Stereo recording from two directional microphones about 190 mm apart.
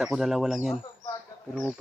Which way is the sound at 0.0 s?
Centre (ahead or behind).